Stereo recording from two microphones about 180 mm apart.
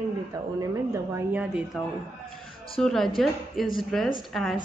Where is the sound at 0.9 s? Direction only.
10° right (ahead or behind).